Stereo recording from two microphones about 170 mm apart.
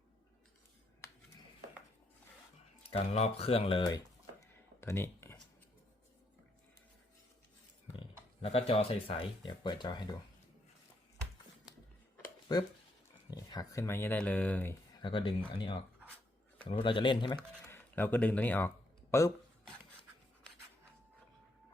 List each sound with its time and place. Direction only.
2.9 s a sound: 35° left (ahead or behind); by 5.4 s 15° left (ahead or behind)
8.4 s speech: 35° left (ahead or behind)
12.5 s speech: 25° left (ahead or behind)
14.9 s speech: 30° left (ahead or behind)
17.7 s speech: 10° left (ahead or behind)